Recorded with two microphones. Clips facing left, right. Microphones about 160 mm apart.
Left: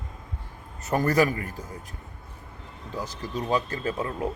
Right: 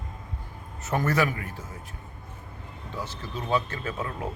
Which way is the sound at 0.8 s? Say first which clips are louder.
Left 3 dB; 35° left (ahead or behind).